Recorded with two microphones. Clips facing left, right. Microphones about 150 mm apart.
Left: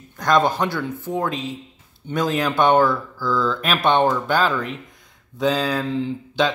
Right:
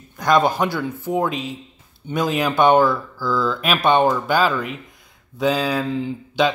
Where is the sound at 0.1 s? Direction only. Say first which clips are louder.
Right 1 dB; 10° right (ahead or behind).